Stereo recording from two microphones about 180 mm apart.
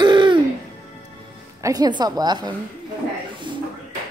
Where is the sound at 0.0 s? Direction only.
25° right (ahead or behind).